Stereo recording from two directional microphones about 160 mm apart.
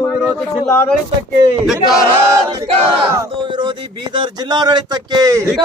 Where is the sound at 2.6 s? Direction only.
35° right (ahead or behind).